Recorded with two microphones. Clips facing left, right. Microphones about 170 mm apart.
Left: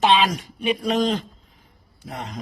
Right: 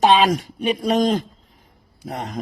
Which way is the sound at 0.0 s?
40° right (ahead or behind).